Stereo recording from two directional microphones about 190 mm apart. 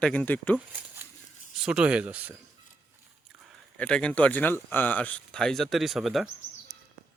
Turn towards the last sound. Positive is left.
turn(degrees=0)  # may be behind; listen again after turning